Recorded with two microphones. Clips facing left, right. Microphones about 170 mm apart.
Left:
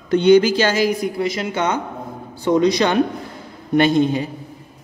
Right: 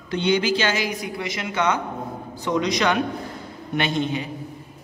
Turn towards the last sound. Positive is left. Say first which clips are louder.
# left 8 dB
turn(degrees=40)  # may be behind; listen again after turning